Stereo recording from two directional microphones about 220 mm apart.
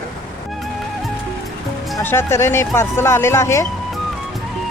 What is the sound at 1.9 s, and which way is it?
Speech, 10° left (ahead or behind).